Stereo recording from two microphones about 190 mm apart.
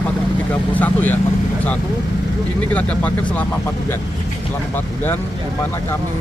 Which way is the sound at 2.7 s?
5° left (ahead or behind).